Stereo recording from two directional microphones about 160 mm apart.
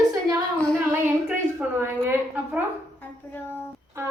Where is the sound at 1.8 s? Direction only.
15° right (ahead or behind).